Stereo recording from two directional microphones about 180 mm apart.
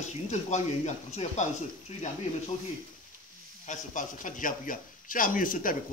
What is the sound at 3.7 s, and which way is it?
A man's voice, 45° left (ahead or behind).